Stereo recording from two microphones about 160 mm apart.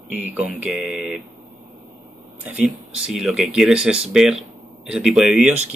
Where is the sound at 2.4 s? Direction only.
5° right (ahead or behind).